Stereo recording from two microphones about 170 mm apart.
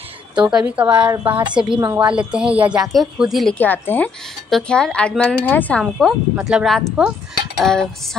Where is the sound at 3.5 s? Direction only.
10° left (ahead or behind).